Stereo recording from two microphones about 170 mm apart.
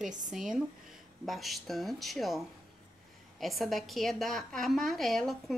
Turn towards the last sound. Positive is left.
turn(degrees=0)  # may be behind; listen again after turning